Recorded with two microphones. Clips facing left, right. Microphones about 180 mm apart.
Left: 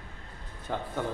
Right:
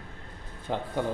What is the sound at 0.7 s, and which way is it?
Speech, 15° right (ahead or behind).